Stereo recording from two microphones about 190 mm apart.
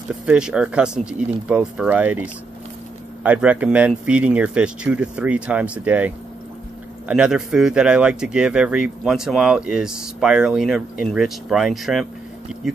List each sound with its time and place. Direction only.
0.3 s speech: 5° right (ahead or behind)